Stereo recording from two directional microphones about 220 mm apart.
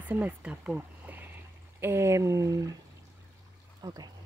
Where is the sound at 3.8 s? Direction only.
15° right (ahead or behind).